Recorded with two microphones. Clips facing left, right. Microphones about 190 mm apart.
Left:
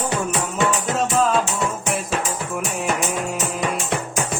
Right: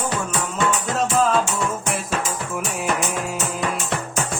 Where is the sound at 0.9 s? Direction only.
Centre (ahead or behind).